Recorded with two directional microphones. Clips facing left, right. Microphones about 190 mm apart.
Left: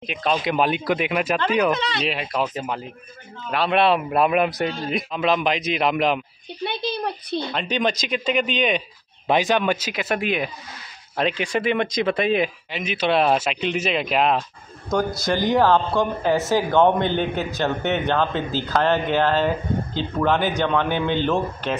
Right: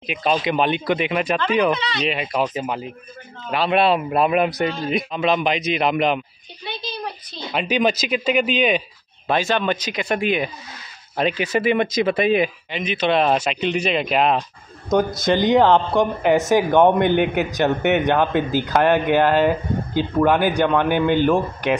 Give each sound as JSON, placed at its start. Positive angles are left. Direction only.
{"t": 0.0, "sound": "speech", "side_deg": -5}
{"t": 1.8, "sound": "speech", "side_deg": 55}
{"t": 2.0, "sound": "speech", "side_deg": 0}
{"t": 6.6, "sound": "a sound", "side_deg": 60}
{"t": 7.5, "sound": "speech", "side_deg": -10}
{"t": 9.3, "sound": "speech", "side_deg": 15}
{"t": 14.9, "sound": "speech", "side_deg": -20}